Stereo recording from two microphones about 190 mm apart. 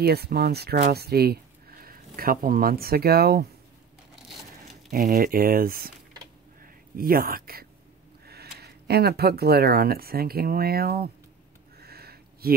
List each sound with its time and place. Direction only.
0.0 s speech: 55° right (ahead or behind)
4.9 s speech: 50° right (ahead or behind)
7.0 s speech: 50° right (ahead or behind)
11.8 s a sound: 55° right (ahead or behind)